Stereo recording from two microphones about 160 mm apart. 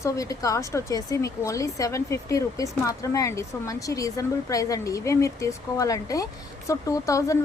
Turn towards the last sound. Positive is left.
turn(degrees=20)  # may be behind; listen again after turning